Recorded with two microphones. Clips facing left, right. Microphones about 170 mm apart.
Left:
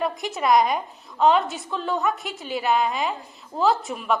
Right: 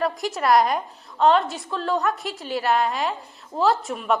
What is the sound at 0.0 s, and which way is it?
A woman's voice, centre (ahead or behind).